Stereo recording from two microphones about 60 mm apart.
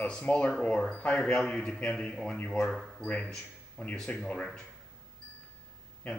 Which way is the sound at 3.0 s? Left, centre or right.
Left.